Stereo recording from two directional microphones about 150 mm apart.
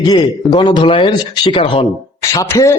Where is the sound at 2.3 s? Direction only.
20° left (ahead or behind).